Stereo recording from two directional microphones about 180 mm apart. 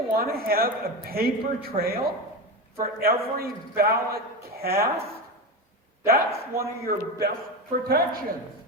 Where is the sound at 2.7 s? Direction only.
55° right (ahead or behind).